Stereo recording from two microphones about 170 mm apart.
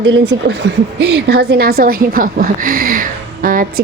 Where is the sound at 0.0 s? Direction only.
90° right.